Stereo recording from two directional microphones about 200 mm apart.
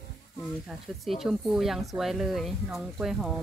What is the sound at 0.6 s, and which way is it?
Speech, centre (ahead or behind).